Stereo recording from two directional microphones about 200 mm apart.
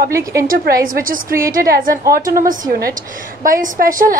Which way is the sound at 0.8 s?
45° right (ahead or behind).